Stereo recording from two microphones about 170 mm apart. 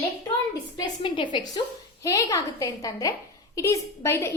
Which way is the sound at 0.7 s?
25° left (ahead or behind).